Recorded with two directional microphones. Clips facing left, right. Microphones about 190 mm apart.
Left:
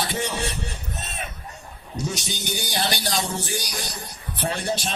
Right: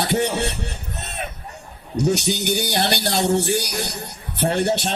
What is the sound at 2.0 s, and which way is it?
Speech, 65° right (ahead or behind).